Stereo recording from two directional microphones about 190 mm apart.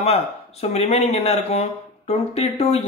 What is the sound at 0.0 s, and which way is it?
Speech, 35° left (ahead or behind).